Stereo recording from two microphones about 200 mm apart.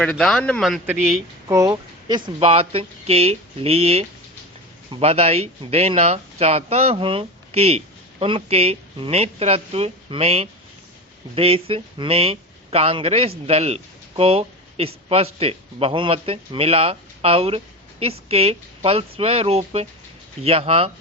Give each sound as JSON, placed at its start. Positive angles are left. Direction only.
{"t": 0.0, "sound": "speech", "side_deg": 5}
{"t": 1.5, "sound": "speech", "side_deg": -15}